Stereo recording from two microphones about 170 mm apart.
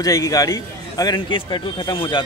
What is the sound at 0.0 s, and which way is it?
A man's voice, 20° left (ahead or behind).